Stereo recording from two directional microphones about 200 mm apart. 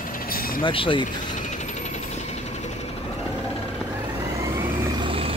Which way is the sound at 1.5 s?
35° left (ahead or behind).